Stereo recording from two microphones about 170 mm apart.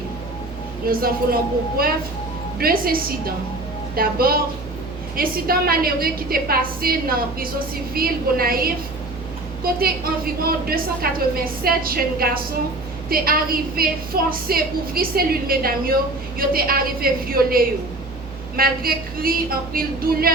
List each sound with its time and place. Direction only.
0.9 s a woman's voice: 60° right (ahead or behind)
7.9 s a woman's voice: 60° right (ahead or behind)
9.8 s a woman's voice: 60° right (ahead or behind)